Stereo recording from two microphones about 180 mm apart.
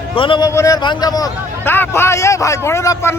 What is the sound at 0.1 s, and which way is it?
A man's voice, 30° left (ahead or behind).